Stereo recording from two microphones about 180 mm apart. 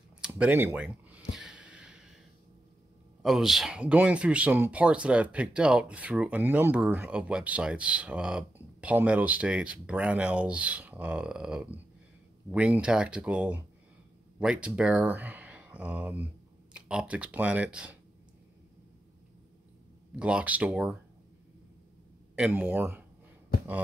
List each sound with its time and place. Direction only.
0.2 s speech: 10° right (ahead or behind)
1.3 s a sound: 5° right (ahead or behind)
3.2 s speech: centre (ahead or behind)
20.2 s speech: 5° right (ahead or behind)
22.3 s speech: 10° right (ahead or behind)
23.5 s a sound: 55° left (ahead or behind)